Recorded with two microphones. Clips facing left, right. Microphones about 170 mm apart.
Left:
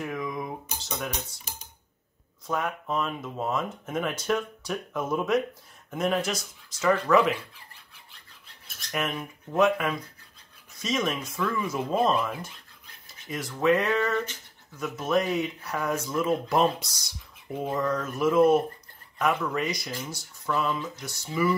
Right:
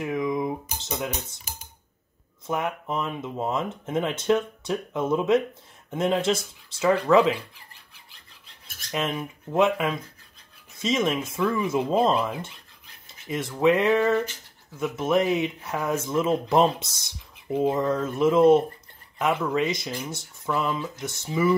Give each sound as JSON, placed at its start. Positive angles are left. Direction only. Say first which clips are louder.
{"t": 0.0, "sound": "cutlery", "louder": "right 6 dB", "side_deg": -20}
{"t": 2.4, "sound": "speech", "louder": "right 2 dB", "side_deg": -20}
{"t": 8.9, "sound": "speech", "louder": "right 2 dB", "side_deg": -25}